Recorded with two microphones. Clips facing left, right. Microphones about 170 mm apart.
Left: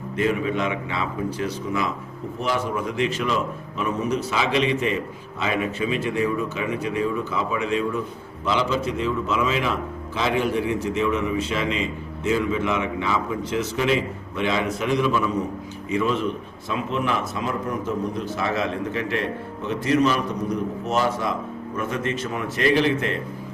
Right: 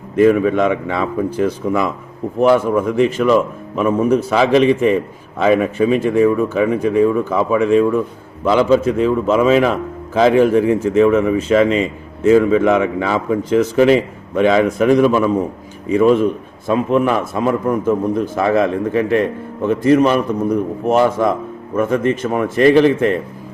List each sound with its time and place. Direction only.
0.2 s a man's voice: 50° right (ahead or behind)
14.3 s a man's voice: 50° right (ahead or behind)